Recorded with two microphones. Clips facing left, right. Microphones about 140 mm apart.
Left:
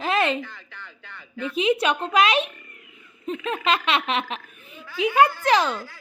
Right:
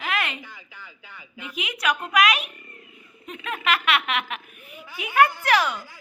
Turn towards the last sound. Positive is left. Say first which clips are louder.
# left 2 dB
turn(degrees=25)  # may be behind; listen again after turning